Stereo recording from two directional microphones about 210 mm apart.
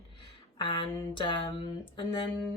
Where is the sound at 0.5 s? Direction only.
20° left (ahead or behind).